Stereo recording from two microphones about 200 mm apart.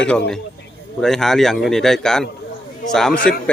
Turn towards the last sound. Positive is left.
turn(degrees=0)  # may be behind; listen again after turning